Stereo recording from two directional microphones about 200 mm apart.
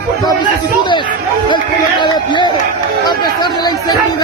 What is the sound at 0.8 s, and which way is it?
Speech, 25° left (ahead or behind).